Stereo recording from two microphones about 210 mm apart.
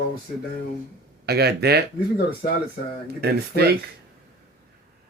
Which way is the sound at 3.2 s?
50° right (ahead or behind).